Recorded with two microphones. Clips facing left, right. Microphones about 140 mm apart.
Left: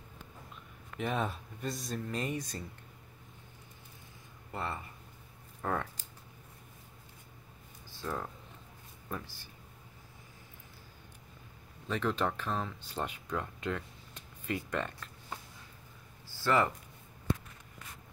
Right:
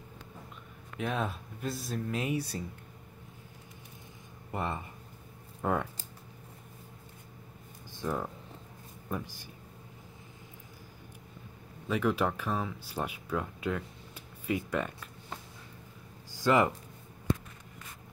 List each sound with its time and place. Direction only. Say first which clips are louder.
0.9 s speech: right 1 dB; centre (ahead or behind)
4.5 s speech: right 4 dB; 20° right (ahead or behind)
7.9 s speech: right 4 dB; 15° right (ahead or behind)
11.9 s speech: right 3 dB; 10° right (ahead or behind)
16.3 s a sound: right 3 dB; 15° right (ahead or behind)